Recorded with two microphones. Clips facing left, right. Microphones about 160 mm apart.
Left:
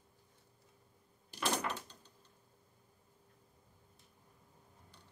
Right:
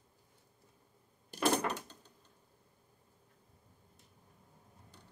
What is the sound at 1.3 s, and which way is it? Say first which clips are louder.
Door: right 5 dB; 50° right (ahead or behind).